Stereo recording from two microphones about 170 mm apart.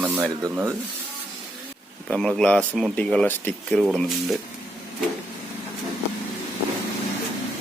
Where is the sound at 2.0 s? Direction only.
5° left (ahead or behind).